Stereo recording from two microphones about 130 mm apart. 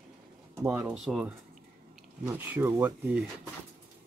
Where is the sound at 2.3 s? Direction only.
15° right (ahead or behind).